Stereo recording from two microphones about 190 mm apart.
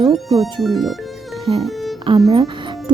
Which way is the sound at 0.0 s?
Centre (ahead or behind).